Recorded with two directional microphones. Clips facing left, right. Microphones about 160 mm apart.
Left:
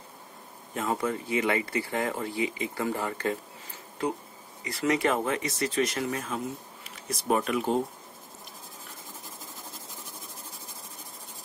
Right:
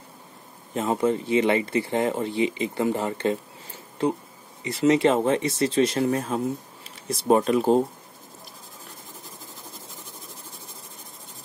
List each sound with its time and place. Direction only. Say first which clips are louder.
0.7 s speech: right 6 dB; 25° right (ahead or behind)